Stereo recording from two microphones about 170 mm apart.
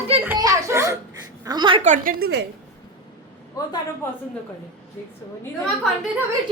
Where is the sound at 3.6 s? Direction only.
20° left (ahead or behind).